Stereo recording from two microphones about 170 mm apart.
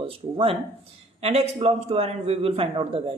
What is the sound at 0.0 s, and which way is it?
A man's voice, 35° right (ahead or behind).